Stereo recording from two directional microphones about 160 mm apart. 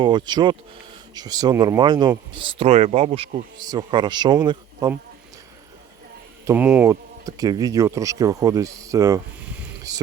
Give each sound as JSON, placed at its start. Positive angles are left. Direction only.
{"t": 0.0, "sound": "speech", "side_deg": -30}
{"t": 6.4, "sound": "speech", "side_deg": -15}
{"t": 7.3, "sound": "speech", "side_deg": -25}